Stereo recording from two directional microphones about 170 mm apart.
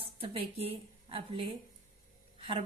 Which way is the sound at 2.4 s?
35° right (ahead or behind).